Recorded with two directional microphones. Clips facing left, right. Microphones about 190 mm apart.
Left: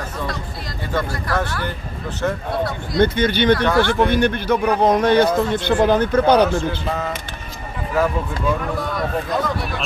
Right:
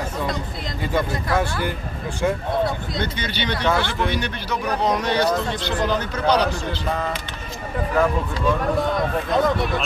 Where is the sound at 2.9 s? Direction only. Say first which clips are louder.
Left 10 dB; 55° left (ahead or behind).